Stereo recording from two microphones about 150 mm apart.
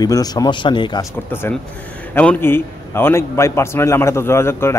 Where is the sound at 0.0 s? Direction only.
25° left (ahead or behind).